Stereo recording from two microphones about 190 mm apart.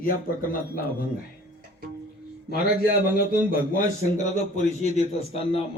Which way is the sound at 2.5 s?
55° left (ahead or behind).